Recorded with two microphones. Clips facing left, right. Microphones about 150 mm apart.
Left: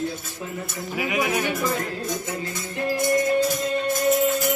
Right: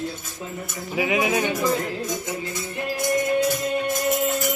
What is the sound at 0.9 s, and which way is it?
Jingle bell, 25° right (ahead or behind).